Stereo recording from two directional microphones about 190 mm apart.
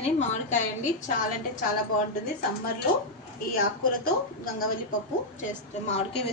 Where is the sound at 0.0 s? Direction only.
35° left (ahead or behind).